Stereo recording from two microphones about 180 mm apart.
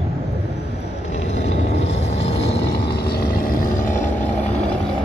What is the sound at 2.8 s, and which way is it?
Vehicle, 60° left (ahead or behind).